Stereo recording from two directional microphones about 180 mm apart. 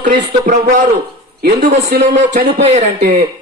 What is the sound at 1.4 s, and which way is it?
Speech, 60° right (ahead or behind).